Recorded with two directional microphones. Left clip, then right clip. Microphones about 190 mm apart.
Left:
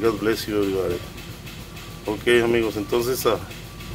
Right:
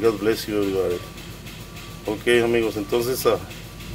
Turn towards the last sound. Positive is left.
turn(degrees=0)  # may be behind; listen again after turning